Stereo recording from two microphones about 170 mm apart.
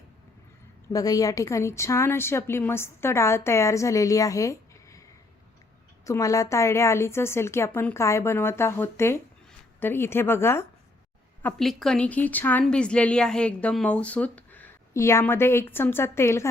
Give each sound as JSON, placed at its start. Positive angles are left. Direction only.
{"t": 0.9, "sound": "speech", "side_deg": 20}
{"t": 6.1, "sound": "speech", "side_deg": 20}
{"t": 11.4, "sound": "speech", "side_deg": 0}